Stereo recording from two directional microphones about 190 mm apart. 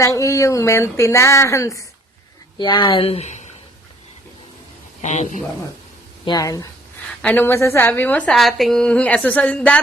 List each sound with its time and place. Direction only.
0.0 s a woman's voice: 15° left (ahead or behind); by 3.5 s 35° left (ahead or behind)
5.0 s speech: 40° left (ahead or behind)
6.2 s a woman's voice: 20° left (ahead or behind)